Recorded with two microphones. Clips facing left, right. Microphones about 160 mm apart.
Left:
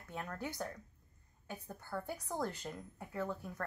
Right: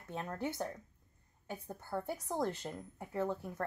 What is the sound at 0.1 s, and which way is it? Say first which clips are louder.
A woman's voice: right 4 dB; 25° right (ahead or behind).